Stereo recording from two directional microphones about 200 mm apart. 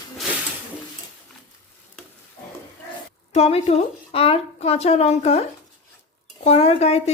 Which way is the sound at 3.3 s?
30° left (ahead or behind).